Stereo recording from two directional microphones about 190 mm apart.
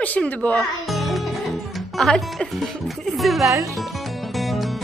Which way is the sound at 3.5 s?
15° right (ahead or behind).